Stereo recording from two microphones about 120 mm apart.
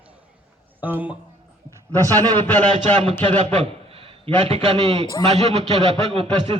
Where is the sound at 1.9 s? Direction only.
15° left (ahead or behind).